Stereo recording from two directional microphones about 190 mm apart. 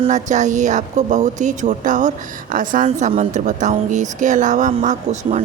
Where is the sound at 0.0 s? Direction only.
40° right (ahead or behind).